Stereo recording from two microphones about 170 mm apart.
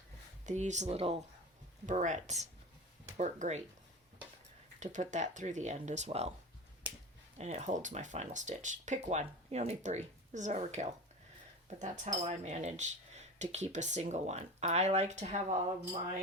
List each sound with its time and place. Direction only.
0.4 s speech: 45° right (ahead or behind)
1.9 s speech: 45° right (ahead or behind)
4.8 s speech: 45° right (ahead or behind)
7.3 s speech: 40° right (ahead or behind)